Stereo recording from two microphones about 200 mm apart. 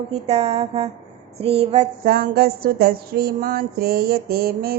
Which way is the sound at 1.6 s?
40° right (ahead or behind).